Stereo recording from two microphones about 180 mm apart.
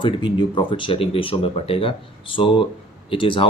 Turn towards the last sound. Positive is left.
turn(degrees=30)  # may be behind; listen again after turning